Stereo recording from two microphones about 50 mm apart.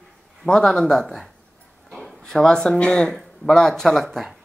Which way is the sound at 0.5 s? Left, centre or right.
Centre.